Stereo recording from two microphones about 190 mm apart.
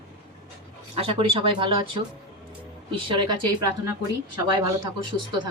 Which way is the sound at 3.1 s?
25° right (ahead or behind).